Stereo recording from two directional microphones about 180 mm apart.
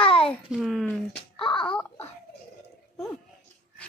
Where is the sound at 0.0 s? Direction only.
30° left (ahead or behind).